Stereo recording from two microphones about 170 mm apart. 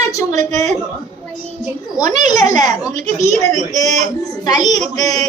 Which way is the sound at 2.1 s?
45° right (ahead or behind).